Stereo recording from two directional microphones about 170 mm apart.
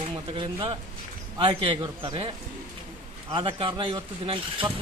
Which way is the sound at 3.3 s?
30° right (ahead or behind).